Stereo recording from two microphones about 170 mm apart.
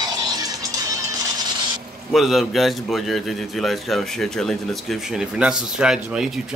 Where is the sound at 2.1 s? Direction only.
Centre (ahead or behind).